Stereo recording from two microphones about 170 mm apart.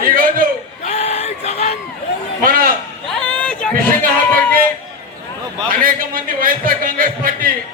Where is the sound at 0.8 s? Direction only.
40° left (ahead or behind).